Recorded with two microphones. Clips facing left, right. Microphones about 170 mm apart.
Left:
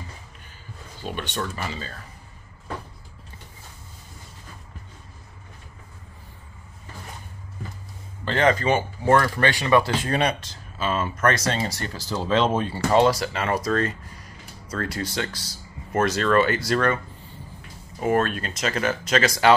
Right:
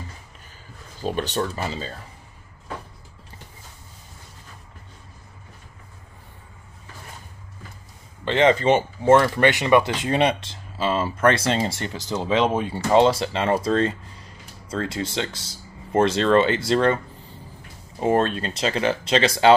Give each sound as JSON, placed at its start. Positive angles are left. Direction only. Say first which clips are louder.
{"t": 1.0, "sound": "speech", "louder": "right 5 dB", "side_deg": -40}
{"t": 8.3, "sound": "speech", "louder": "right 3 dB", "side_deg": -20}